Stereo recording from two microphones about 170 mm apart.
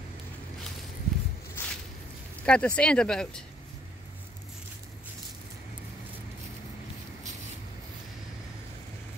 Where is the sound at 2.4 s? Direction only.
5° left (ahead or behind).